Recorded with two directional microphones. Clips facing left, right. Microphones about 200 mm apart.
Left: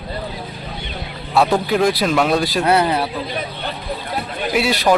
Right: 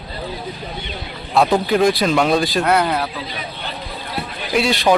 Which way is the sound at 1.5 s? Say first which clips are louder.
Right 1 dB; centre (ahead or behind).